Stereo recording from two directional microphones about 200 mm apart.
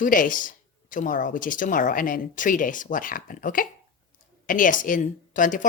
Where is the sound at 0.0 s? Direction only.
40° left (ahead or behind).